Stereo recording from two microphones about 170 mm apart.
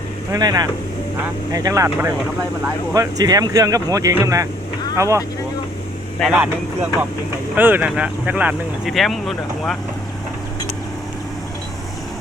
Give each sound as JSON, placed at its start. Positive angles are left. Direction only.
{"t": 0.3, "sound": "speech", "side_deg": -20}
{"t": 6.1, "sound": "speech", "side_deg": 0}
{"t": 7.5, "sound": "speech", "side_deg": -10}